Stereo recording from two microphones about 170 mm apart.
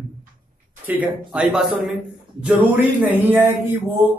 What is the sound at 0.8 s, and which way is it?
Speech, 10° right (ahead or behind).